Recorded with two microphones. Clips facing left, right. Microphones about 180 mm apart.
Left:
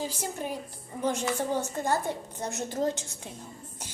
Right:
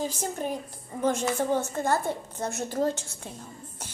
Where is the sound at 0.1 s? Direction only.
45° right (ahead or behind).